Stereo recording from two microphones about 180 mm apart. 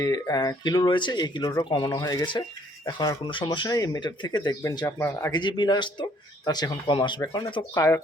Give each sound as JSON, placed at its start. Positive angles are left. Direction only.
{"t": 0.0, "sound": "speech", "side_deg": 20}
{"t": 5.3, "sound": "speech", "side_deg": 25}